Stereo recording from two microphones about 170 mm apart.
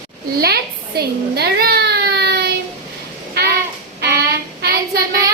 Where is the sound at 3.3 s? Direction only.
75° right (ahead or behind).